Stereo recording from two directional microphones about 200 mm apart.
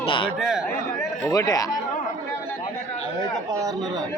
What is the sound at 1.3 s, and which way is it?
Speech, 20° left (ahead or behind).